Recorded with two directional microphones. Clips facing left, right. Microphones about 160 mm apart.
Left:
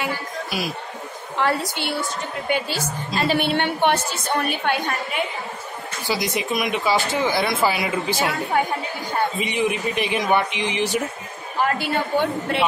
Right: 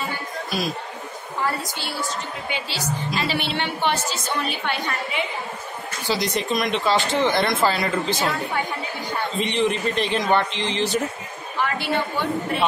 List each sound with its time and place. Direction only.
0.5 s speech: 10° left (ahead or behind)
1.4 s a woman's voice: 75° left (ahead or behind)
2.5 s a woman's voice: 50° left (ahead or behind)
6.0 s speech: 10° left (ahead or behind)
9.4 s speech: 10° left (ahead or behind)
11.6 s a woman's voice: 45° left (ahead or behind)